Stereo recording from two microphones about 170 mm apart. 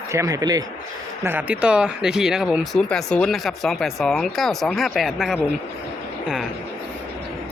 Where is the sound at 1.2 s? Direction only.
10° right (ahead or behind).